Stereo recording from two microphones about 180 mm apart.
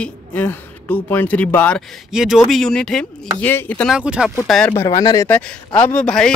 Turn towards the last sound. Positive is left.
turn(degrees=5)  # may be behind; listen again after turning